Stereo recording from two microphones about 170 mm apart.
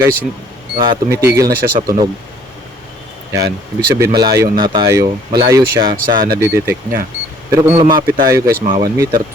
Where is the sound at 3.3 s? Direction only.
70° right (ahead or behind).